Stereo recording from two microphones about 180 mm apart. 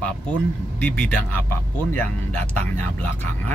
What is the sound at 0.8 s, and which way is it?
Speech, 10° left (ahead or behind).